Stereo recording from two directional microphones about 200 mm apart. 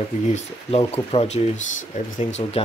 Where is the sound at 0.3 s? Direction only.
30° left (ahead or behind).